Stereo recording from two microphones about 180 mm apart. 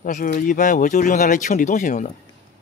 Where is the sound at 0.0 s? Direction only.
50° left (ahead or behind).